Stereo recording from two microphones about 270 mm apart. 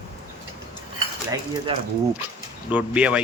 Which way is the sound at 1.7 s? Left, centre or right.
Centre.